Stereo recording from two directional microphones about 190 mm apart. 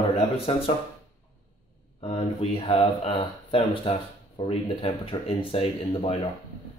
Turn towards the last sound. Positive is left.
turn(degrees=25)  # may be behind; listen again after turning